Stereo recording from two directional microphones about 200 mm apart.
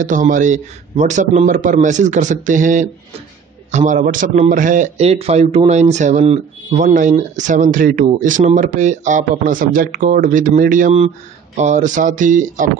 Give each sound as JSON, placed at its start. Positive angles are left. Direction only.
{"t": 0.0, "sound": "a man's voice", "side_deg": -40}